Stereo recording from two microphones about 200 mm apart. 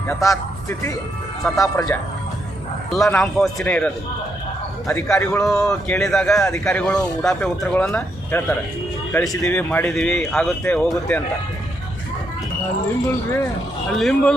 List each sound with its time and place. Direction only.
0.1 s speech: 15° left (ahead or behind)
2.9 s speech: centre (ahead or behind)
13.9 s speech: 5° left (ahead or behind)